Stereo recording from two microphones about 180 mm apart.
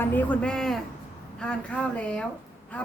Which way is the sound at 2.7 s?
10° left (ahead or behind).